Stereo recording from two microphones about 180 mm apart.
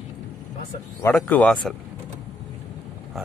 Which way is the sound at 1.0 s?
10° left (ahead or behind).